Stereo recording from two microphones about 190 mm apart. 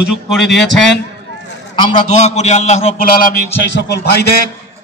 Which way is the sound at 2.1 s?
35° left (ahead or behind).